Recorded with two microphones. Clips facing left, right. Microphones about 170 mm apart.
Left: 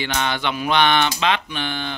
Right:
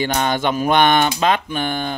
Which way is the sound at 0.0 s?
45° right (ahead or behind).